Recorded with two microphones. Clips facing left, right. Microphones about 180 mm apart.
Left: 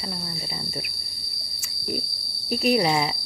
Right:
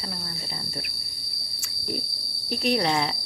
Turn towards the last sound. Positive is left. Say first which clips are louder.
# left 3 dB
turn(degrees=10)  # may be behind; listen again after turning